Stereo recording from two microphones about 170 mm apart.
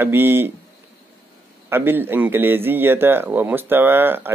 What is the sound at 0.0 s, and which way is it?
Speech, 10° right (ahead or behind).